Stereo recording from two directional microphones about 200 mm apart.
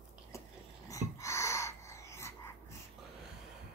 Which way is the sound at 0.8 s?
15° left (ahead or behind).